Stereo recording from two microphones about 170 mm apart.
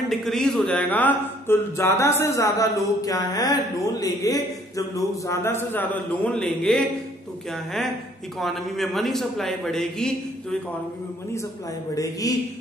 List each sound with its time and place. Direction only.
0.1 s a man's voice: centre (ahead or behind)
11.9 s a man's voice: 20° left (ahead or behind)